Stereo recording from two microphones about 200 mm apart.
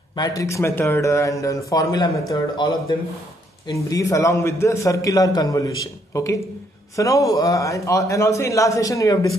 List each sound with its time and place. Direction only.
0.1 s a man's voice: 20° left (ahead or behind)